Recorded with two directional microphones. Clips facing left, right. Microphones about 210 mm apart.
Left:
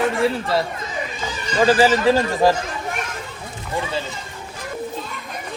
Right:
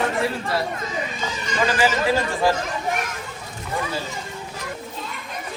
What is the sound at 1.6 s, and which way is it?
Speech, 35° left (ahead or behind).